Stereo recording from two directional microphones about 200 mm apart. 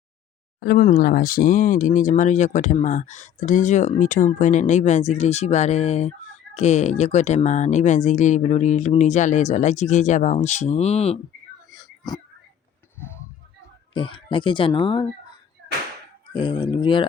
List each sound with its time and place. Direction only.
0.6 s speech: 50° left (ahead or behind); by 11.2 s 30° left (ahead or behind)
11.7 s frog: 20° left (ahead or behind)
13.9 s speech: 25° left (ahead or behind)
16.3 s speech: 20° left (ahead or behind)